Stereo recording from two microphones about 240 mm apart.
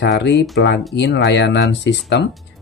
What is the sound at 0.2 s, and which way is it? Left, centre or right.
Speech, left.